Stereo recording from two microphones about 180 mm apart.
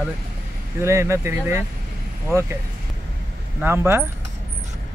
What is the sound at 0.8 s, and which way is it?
Speech, 15° right (ahead or behind).